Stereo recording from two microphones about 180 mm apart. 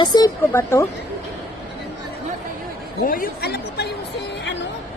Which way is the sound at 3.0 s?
50° left (ahead or behind).